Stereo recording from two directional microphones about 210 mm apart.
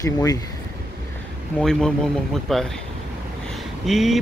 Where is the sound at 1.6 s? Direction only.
5° left (ahead or behind).